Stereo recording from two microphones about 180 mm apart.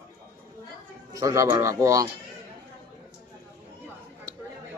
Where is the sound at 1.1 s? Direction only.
15° right (ahead or behind).